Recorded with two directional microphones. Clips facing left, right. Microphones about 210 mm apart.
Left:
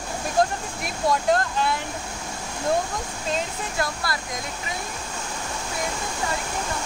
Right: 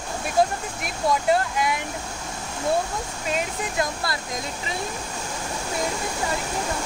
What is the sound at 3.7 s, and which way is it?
Speech, 20° right (ahead or behind).